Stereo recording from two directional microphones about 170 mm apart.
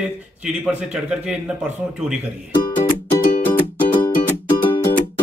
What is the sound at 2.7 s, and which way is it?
Music, 50° left (ahead or behind).